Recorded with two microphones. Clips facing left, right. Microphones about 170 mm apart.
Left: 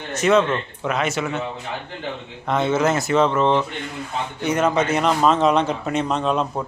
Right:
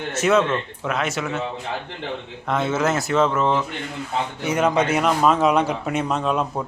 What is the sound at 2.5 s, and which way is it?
A man's voice, centre (ahead or behind).